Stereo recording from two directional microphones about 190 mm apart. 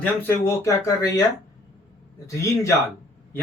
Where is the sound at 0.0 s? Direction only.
10° left (ahead or behind).